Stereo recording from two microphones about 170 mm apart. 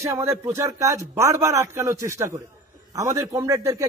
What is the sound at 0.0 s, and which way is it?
A man's voice, 15° right (ahead or behind).